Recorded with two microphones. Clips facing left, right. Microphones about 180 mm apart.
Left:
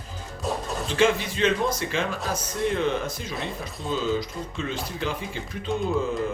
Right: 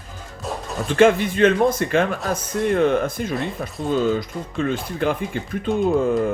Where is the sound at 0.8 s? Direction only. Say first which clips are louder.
Right 7 dB; 55° right (ahead or behind).